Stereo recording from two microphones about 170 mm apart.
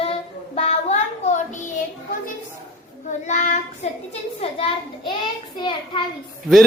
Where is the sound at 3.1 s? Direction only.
45° left (ahead or behind).